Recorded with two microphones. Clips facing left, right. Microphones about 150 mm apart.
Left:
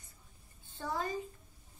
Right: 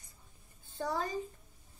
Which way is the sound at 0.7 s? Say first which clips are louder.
Right 2 dB; 40° right (ahead or behind).